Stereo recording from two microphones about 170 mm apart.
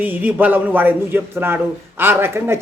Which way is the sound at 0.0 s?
10° right (ahead or behind).